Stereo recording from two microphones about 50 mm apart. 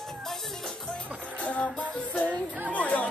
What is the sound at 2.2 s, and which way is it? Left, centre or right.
Music, left.